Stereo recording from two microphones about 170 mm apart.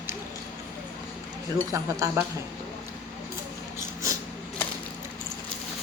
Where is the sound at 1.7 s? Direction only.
20° right (ahead or behind).